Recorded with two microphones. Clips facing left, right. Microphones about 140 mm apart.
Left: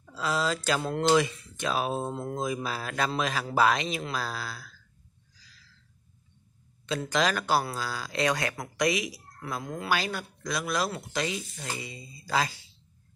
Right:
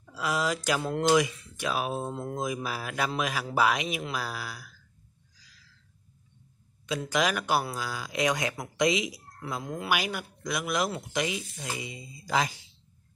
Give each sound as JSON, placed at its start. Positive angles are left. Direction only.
{"t": 0.1, "sound": "speech", "side_deg": -15}
{"t": 6.9, "sound": "speech", "side_deg": -10}